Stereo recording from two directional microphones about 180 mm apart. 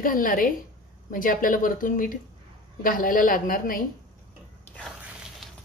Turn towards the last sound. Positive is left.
turn(degrees=0)  # may be behind; listen again after turning